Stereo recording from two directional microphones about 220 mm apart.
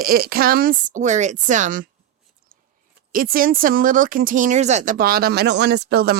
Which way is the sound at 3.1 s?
40° right (ahead or behind).